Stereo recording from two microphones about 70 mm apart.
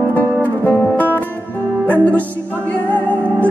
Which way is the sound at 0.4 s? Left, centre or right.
Left.